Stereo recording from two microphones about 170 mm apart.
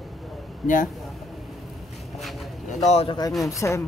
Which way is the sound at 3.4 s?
20° left (ahead or behind).